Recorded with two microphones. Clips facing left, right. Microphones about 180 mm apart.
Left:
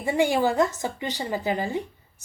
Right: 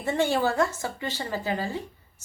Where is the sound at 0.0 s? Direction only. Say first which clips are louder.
Left 2 dB; 10° left (ahead or behind).